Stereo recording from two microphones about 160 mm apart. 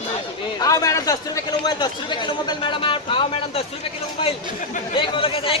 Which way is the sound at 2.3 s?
30° left (ahead or behind).